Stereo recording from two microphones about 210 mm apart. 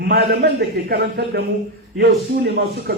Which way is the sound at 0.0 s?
55° right (ahead or behind).